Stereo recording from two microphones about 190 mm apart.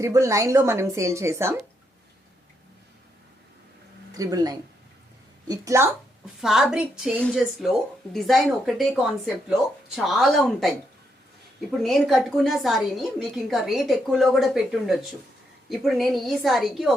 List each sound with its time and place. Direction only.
0.0 s a woman's voice: 15° right (ahead or behind)
4.2 s a woman's voice: 20° right (ahead or behind)
6.4 s speech: centre (ahead or behind)
11.8 s speech: centre (ahead or behind)